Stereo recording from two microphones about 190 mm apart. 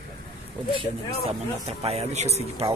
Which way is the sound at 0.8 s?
30° right (ahead or behind).